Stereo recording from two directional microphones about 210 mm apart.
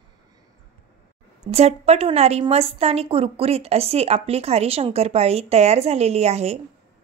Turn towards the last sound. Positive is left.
turn(degrees=-30)  # may be behind; listen again after turning